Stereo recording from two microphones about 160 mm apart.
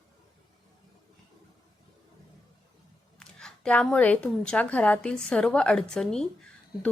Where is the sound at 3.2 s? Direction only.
5° left (ahead or behind).